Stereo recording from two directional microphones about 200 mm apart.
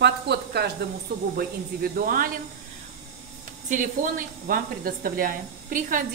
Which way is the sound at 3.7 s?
40° right (ahead or behind).